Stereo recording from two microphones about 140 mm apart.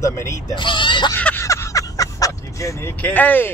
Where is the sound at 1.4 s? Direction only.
20° left (ahead or behind).